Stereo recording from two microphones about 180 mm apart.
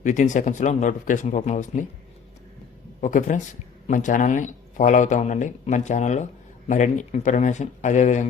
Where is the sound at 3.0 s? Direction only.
45° left (ahead or behind).